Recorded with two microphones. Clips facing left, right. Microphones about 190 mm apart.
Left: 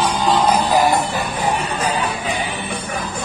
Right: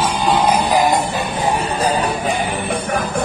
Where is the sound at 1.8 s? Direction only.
35° right (ahead or behind).